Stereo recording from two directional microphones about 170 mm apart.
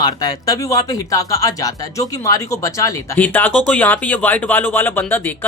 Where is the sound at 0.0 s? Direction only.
20° left (ahead or behind).